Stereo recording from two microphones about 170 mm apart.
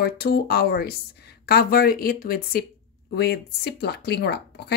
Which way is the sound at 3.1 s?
75° left (ahead or behind).